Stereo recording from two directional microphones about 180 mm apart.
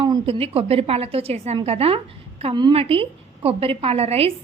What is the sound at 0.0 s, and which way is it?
A woman's voice, 30° right (ahead or behind).